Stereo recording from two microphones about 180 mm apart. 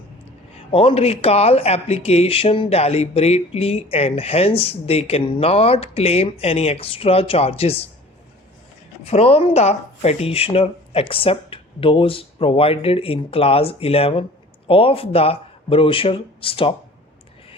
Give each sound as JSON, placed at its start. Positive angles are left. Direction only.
{"t": 0.7, "sound": "speech", "side_deg": 30}
{"t": 9.0, "sound": "speech", "side_deg": 35}